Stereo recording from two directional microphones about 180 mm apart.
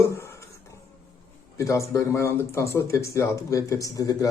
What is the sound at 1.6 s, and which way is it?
Speech, 15° left (ahead or behind).